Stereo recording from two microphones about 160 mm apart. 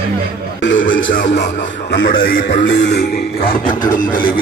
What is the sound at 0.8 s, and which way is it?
Speech, 55° left (ahead or behind).